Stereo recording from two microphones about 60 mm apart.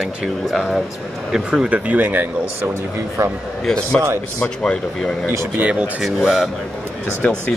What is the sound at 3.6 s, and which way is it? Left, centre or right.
Speech, centre.